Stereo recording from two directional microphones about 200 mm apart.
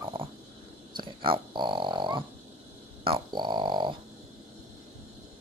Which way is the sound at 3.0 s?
25° right (ahead or behind).